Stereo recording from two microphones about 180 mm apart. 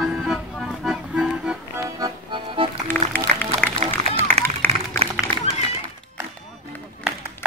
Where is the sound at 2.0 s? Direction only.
25° right (ahead or behind).